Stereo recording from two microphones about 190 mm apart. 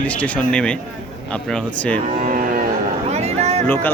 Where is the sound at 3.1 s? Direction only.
35° right (ahead or behind).